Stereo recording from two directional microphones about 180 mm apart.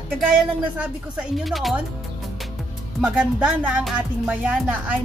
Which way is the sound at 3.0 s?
5° right (ahead or behind).